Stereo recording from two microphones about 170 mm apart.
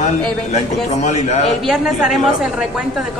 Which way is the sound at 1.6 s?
5° right (ahead or behind).